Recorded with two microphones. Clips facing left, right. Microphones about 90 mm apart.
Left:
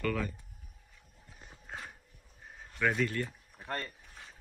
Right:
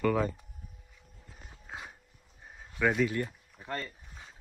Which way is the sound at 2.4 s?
5° right (ahead or behind).